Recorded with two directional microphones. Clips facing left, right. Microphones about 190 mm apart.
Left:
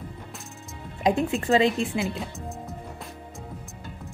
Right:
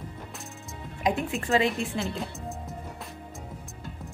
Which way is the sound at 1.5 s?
20° left (ahead or behind).